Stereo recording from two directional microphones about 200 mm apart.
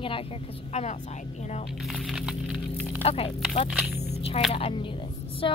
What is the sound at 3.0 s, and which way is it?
Speech, 30° left (ahead or behind).